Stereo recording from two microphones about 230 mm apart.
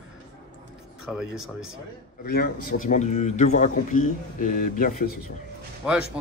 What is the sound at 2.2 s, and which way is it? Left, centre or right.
A man's voice, left.